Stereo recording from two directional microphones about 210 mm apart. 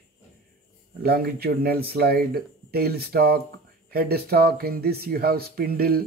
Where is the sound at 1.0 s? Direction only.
50° right (ahead or behind).